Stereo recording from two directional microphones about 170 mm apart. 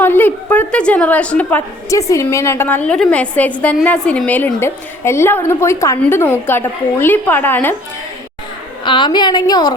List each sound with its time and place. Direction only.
0.0 s a woman's voice: 10° left (ahead or behind)
8.8 s a woman's voice: 25° left (ahead or behind)